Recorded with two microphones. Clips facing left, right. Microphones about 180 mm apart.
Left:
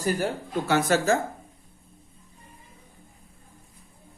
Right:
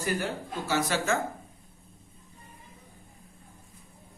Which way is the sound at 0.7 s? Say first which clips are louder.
Left 5 dB; 50° left (ahead or behind).